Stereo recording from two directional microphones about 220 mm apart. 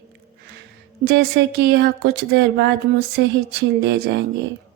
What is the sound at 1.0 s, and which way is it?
Speech, 50° right (ahead or behind).